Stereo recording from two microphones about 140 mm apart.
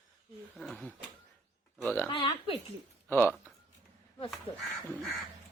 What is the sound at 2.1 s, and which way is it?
Speech, 35° left (ahead or behind).